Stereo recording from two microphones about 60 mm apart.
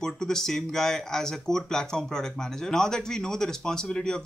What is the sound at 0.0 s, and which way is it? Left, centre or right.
Speech, centre.